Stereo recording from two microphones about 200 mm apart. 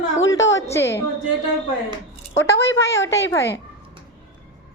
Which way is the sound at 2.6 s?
15° left (ahead or behind).